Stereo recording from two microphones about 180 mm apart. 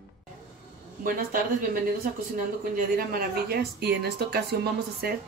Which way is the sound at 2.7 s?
55° right (ahead or behind).